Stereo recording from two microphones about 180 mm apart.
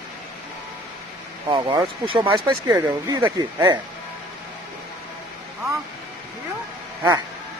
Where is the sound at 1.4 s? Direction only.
25° right (ahead or behind).